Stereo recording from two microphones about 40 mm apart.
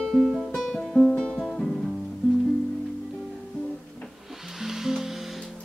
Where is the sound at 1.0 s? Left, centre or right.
Left.